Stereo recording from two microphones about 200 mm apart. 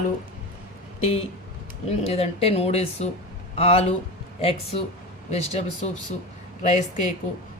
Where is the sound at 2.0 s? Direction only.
30° left (ahead or behind).